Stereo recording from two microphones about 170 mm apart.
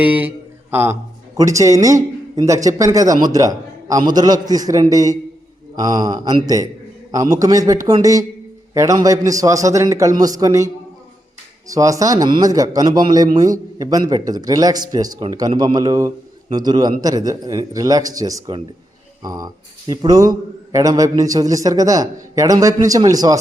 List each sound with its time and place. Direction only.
0.0 s speech: 10° right (ahead or behind)
11.7 s speech: 20° right (ahead or behind)